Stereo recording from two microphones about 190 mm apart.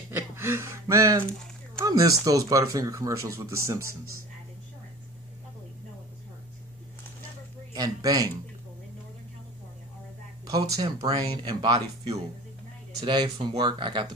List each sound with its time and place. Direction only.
0.1 s gasp: 15° right (ahead or behind)
1.8 s speech: 15° right (ahead or behind)
7.7 s speech: 20° right (ahead or behind)
10.4 s speech: 20° right (ahead or behind)